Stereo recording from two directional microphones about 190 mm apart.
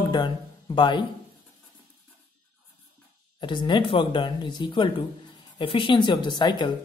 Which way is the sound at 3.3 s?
25° left (ahead or behind).